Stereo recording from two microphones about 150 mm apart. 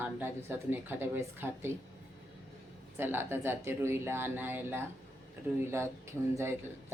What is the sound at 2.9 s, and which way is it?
A woman's voice, 15° right (ahead or behind).